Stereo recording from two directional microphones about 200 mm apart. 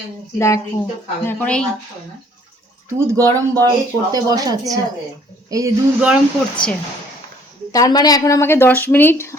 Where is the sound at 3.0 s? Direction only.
15° right (ahead or behind).